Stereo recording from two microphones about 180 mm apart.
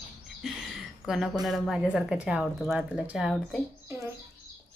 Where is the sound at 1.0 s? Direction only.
Centre (ahead or behind).